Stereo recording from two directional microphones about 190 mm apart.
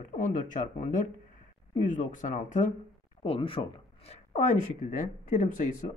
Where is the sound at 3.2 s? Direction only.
30° left (ahead or behind).